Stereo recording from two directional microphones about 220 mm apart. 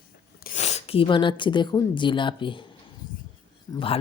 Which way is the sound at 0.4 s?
30° left (ahead or behind).